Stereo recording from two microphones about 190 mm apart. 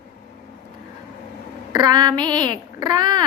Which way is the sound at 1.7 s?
20° right (ahead or behind).